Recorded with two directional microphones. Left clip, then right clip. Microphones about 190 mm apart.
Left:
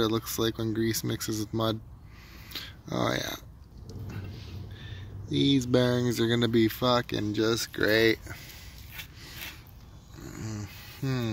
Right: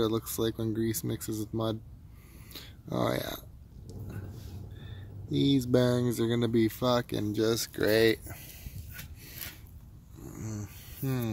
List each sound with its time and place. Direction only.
0.0 s speech: 5° right (ahead or behind)
4.7 s speech: 15° right (ahead or behind)
10.2 s a sound: 10° right (ahead or behind)